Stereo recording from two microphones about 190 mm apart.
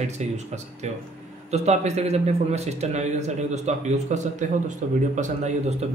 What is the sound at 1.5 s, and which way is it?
A man's voice, 35° right (ahead or behind).